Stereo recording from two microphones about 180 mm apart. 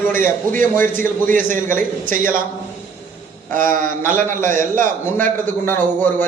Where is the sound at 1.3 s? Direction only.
45° right (ahead or behind).